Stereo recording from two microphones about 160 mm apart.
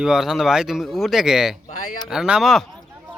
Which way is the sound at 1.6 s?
60° left (ahead or behind).